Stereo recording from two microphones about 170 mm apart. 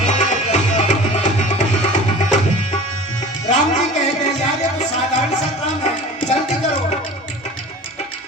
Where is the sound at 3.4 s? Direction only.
45° left (ahead or behind).